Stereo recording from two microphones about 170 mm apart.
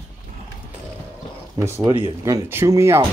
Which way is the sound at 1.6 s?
15° right (ahead or behind).